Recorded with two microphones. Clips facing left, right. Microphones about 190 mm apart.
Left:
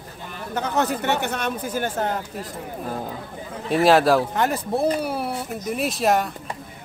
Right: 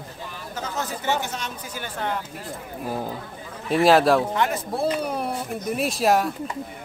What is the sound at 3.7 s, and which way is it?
Speech, centre (ahead or behind).